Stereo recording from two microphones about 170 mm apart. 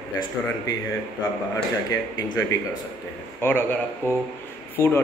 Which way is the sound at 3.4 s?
10° left (ahead or behind).